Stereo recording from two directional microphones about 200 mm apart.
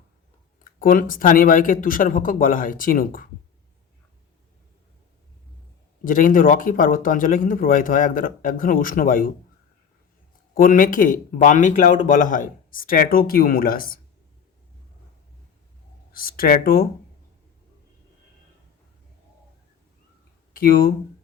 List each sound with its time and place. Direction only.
0.6 s speech: 45° left (ahead or behind)
6.1 s speech: 45° left (ahead or behind)
10.5 s speech: 45° left (ahead or behind)
16.1 s speech: 45° left (ahead or behind)
20.5 s speech: 45° left (ahead or behind)